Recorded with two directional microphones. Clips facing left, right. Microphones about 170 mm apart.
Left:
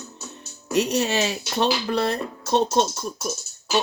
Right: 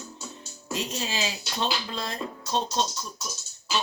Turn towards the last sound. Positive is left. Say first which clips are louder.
# left 6 dB
turn(degrees=55)  # may be behind; listen again after turning